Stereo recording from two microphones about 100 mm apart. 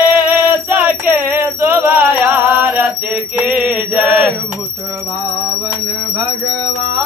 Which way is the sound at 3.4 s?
15° right (ahead or behind).